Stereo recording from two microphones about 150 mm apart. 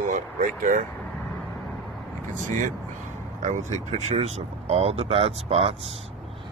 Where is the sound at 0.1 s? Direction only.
60° right (ahead or behind).